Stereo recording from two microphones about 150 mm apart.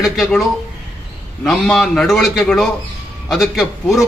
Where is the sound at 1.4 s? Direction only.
Centre (ahead or behind).